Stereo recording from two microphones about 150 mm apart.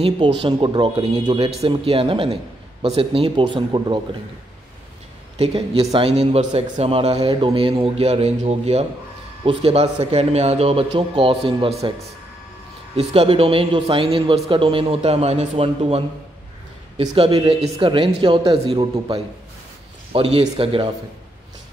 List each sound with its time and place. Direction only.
0.0 s a man's voice: 35° right (ahead or behind)
5.4 s a man's voice: 40° right (ahead or behind)
12.9 s a man's voice: 40° right (ahead or behind)
17.1 s a man's voice: 40° right (ahead or behind)